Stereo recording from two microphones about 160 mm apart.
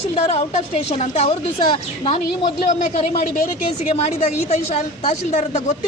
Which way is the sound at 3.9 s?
40° left (ahead or behind).